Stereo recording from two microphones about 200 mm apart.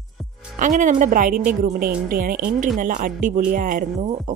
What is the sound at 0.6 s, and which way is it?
Speech, 40° right (ahead or behind).